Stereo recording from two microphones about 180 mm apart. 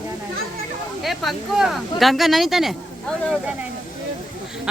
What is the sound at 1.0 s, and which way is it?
Speech, centre (ahead or behind).